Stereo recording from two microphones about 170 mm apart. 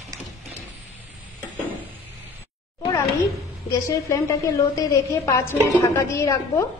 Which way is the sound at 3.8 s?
20° left (ahead or behind).